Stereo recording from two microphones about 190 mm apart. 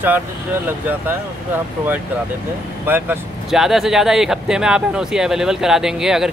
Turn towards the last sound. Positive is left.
turn(degrees=-5)  # may be behind; listen again after turning